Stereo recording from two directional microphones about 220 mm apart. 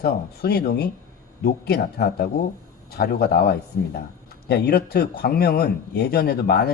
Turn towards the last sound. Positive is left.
turn(degrees=45)  # may be behind; listen again after turning